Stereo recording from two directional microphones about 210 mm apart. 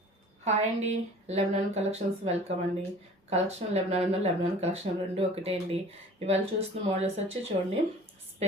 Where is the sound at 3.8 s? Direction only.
30° right (ahead or behind).